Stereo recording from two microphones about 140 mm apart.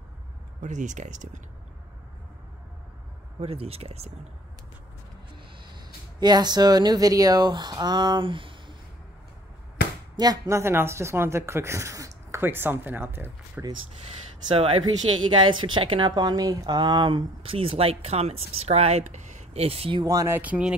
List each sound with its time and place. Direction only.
0.6 s speech: 60° right (ahead or behind)
3.3 s speech: 45° right (ahead or behind)
6.1 s a woman's voice: 30° right (ahead or behind)
10.1 s speech: 30° right (ahead or behind)
14.5 s a woman's voice: 40° right (ahead or behind)
20.1 s speech: 20° right (ahead or behind)